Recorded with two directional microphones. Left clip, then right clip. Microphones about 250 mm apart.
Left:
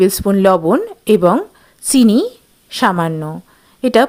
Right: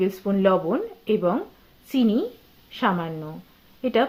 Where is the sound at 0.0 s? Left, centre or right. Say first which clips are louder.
Left 10 dB; left.